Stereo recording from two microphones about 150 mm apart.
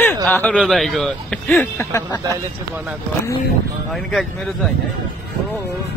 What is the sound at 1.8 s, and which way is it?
Speech, 20° left (ahead or behind).